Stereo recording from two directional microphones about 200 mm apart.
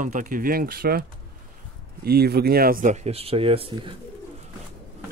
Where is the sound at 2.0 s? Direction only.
50° right (ahead or behind); by 3.9 s 30° right (ahead or behind).